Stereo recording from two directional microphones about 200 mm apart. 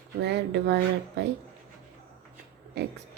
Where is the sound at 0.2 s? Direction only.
60° right (ahead or behind).